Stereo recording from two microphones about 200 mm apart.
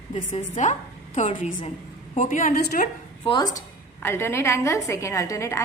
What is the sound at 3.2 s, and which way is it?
A woman's voice, 20° left (ahead or behind).